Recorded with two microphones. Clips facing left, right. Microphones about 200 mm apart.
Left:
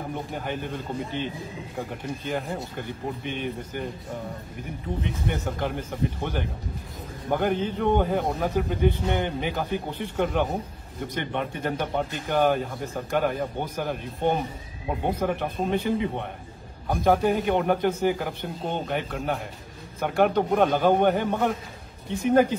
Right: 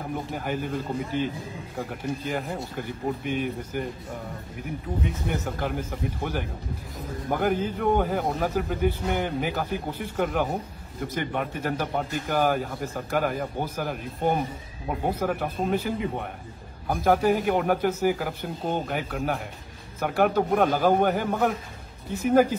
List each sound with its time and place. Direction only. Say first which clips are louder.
0.3 s a man's voice: right 2 dB; 5° right (ahead or behind)
5.0 s a man's voice: left 1 dB; centre (ahead or behind)